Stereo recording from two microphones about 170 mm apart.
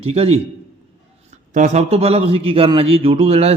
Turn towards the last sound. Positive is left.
turn(degrees=-35)  # may be behind; listen again after turning